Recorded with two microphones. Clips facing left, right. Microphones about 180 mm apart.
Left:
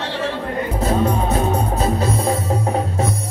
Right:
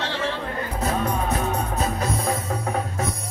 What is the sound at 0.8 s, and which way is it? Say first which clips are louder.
Music: left 5 dB; 30° left (ahead or behind).